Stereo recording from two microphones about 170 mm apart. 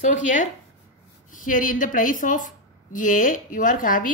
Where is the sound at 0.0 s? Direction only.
50° left (ahead or behind).